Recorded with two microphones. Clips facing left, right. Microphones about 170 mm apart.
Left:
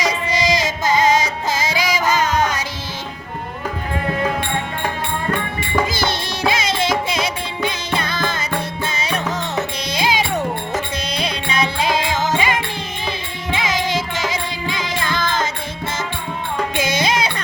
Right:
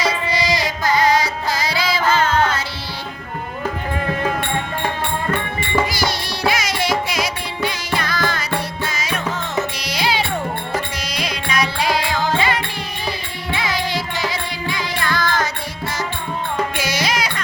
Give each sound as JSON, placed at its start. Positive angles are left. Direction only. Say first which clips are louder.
{"t": 0.0, "sound": "music", "louder": "left 1 dB", "side_deg": 20}
{"t": 5.9, "sound": "music", "louder": "left 1 dB", "side_deg": 25}
{"t": 16.7, "sound": "music", "louder": "left 3 dB", "side_deg": 25}